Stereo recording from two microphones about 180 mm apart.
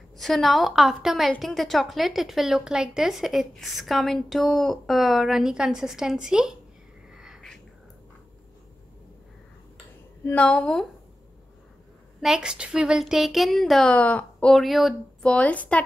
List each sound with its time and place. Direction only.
0.2 s a woman's voice: centre (ahead or behind)
7.2 s a sound: centre (ahead or behind)
10.2 s speech: 10° left (ahead or behind)
12.2 s a woman's voice: 5° right (ahead or behind)